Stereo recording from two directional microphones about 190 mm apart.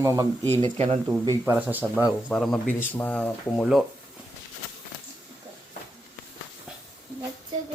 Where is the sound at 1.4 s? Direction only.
10° right (ahead or behind).